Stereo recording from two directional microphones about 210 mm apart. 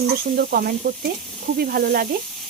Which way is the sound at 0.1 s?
45° right (ahead or behind).